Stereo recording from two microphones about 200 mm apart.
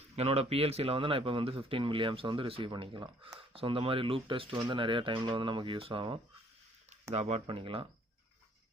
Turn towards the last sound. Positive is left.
turn(degrees=-25)  # may be behind; listen again after turning